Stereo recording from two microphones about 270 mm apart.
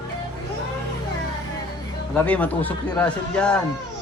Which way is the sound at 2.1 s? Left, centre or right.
Centre.